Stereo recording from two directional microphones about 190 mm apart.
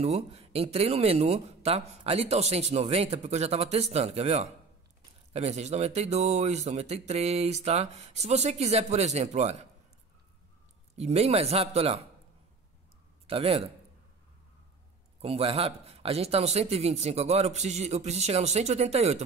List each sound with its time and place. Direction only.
0.0 s speech: 35° right (ahead or behind)
11.0 s speech: 35° right (ahead or behind)
13.3 s speech: 30° right (ahead or behind)
15.2 s speech: 30° right (ahead or behind)